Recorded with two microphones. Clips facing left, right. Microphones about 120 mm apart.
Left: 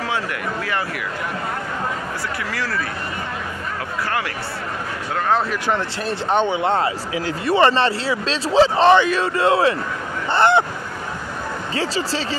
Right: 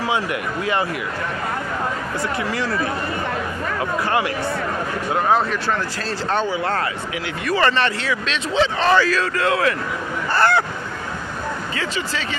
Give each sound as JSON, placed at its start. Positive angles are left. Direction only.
{"t": 2.5, "sound": "speech", "side_deg": -20}
{"t": 5.7, "sound": "speech", "side_deg": 20}
{"t": 10.3, "sound": "honk", "side_deg": 20}
{"t": 11.7, "sound": "speech", "side_deg": 35}